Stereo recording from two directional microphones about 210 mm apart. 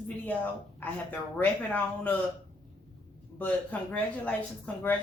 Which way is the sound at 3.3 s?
10° left (ahead or behind).